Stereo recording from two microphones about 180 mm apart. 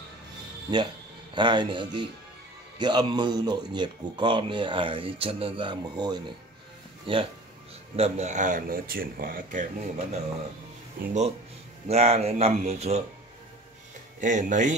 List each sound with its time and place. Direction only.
1.3 s speech: 25° right (ahead or behind); by 10.2 s 40° right (ahead or behind)
11.0 s speech: 55° right (ahead or behind)
11.9 s speech: 35° right (ahead or behind)
14.2 s speech: 45° right (ahead or behind)